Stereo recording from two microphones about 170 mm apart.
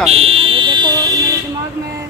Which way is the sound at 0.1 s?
35° right (ahead or behind).